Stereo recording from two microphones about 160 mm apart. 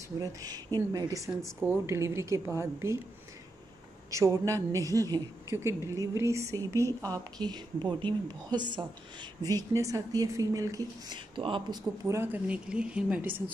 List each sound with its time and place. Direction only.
0.2 s a woman's voice: 25° right (ahead or behind)
4.1 s a woman's voice: 20° right (ahead or behind)
12.0 s a woman's voice: 15° right (ahead or behind)